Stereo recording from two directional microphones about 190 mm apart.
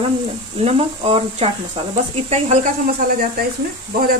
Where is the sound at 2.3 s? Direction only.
40° right (ahead or behind).